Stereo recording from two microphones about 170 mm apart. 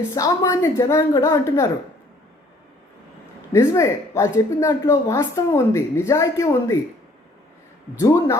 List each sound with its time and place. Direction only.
0.1 s a woman's voice: 20° left (ahead or behind)
3.5 s a woman's voice: 20° left (ahead or behind)
7.9 s a woman's voice: 20° left (ahead or behind)